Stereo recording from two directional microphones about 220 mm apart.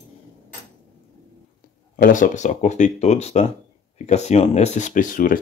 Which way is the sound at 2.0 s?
35° left (ahead or behind).